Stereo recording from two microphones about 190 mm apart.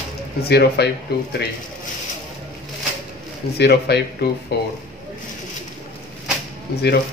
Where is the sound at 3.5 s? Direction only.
60° left (ahead or behind).